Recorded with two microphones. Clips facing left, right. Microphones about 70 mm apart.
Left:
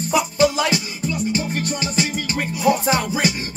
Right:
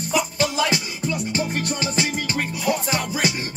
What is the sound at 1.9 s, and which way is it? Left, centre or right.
Music, right.